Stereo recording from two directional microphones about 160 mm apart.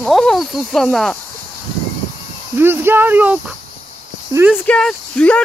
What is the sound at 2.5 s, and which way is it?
Speech, 15° right (ahead or behind).